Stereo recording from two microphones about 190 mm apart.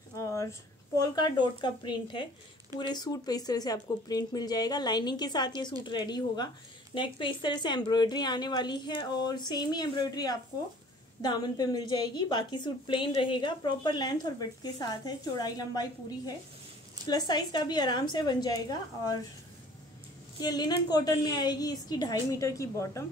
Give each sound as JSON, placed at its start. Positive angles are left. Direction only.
{"t": 0.1, "sound": "a woman's voice", "side_deg": 15}
{"t": 20.4, "sound": "a woman's voice", "side_deg": 20}